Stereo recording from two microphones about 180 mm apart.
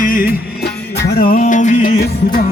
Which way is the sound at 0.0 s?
50° left (ahead or behind).